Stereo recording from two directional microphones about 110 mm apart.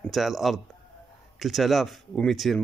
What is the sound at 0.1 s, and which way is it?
Speech, centre (ahead or behind).